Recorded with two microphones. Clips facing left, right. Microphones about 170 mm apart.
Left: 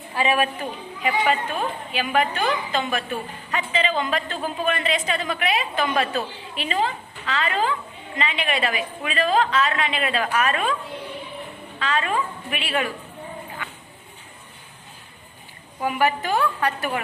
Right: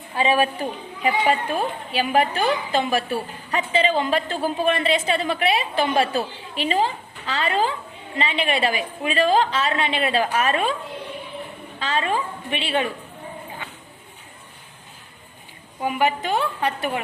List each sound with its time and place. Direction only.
0.2 s a woman's voice: 30° right (ahead or behind)
11.8 s a woman's voice: 30° right (ahead or behind)
15.8 s a woman's voice: 20° right (ahead or behind)